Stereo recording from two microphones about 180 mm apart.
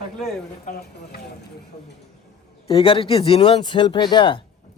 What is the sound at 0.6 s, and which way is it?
Speech, 60° left (ahead or behind).